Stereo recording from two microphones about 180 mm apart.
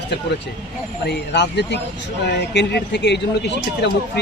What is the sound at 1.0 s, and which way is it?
A man's voice, 70° left (ahead or behind).